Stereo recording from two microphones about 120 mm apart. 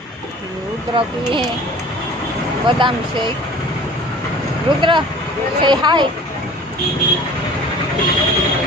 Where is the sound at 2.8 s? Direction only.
40° right (ahead or behind).